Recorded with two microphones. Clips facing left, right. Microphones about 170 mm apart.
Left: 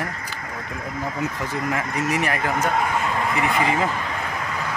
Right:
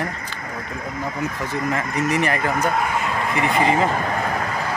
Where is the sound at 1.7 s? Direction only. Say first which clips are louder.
Right 3 dB; 5° left (ahead or behind).